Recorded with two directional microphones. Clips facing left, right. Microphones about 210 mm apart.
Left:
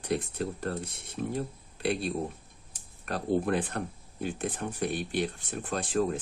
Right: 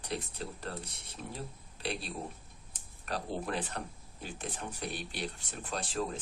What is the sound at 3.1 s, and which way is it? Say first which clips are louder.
Speech: left 8 dB; 50° left (ahead or behind).